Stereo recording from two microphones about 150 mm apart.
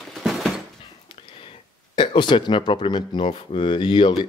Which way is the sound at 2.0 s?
30° left (ahead or behind).